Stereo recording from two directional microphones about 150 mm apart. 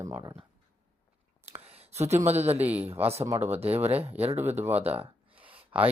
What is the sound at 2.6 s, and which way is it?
Speech, 10° right (ahead or behind).